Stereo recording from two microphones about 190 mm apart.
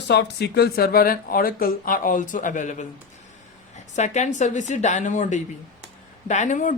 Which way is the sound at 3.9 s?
40° left (ahead or behind).